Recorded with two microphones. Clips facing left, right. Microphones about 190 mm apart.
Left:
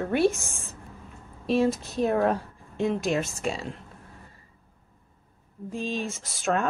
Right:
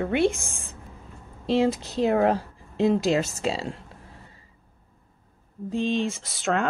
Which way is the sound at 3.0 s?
90° right.